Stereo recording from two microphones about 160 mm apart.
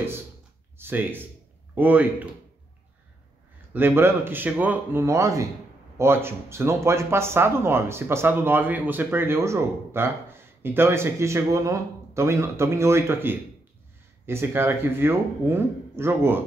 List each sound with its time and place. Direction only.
0.7 s speech: 15° right (ahead or behind)
3.7 s speech: 15° right (ahead or behind)